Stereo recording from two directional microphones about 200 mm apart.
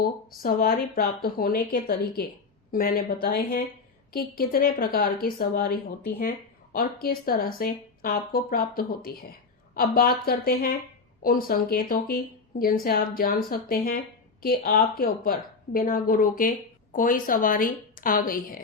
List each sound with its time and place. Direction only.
0.0 s a woman's voice: 45° left (ahead or behind)